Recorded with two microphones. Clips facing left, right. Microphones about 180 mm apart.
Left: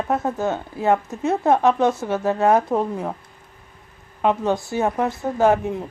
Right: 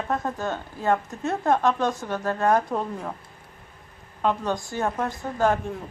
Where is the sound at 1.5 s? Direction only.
20° left (ahead or behind).